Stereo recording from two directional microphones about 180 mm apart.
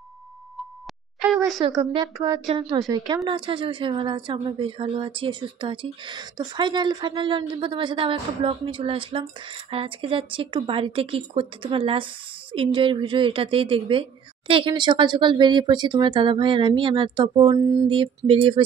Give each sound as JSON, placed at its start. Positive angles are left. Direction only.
{"t": 1.6, "sound": "speech", "side_deg": -30}